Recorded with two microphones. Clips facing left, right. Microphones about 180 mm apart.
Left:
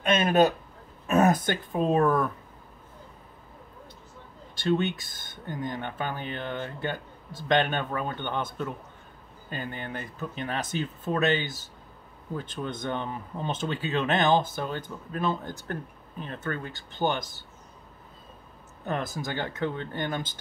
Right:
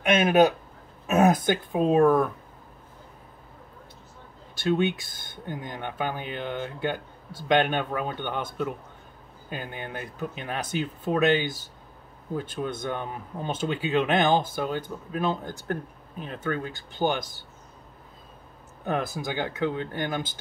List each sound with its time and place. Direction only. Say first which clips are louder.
0.0 s speech: right 2 dB; 10° right (ahead or behind)
4.6 s speech: right 2 dB; 10° right (ahead or behind)
18.9 s speech: right 3 dB; 10° right (ahead or behind)